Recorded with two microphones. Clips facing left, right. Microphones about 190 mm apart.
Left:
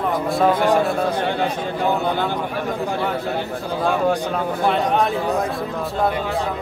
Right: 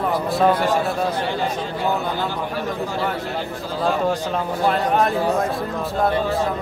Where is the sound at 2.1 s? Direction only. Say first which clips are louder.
Left 2 dB; 55° left (ahead or behind).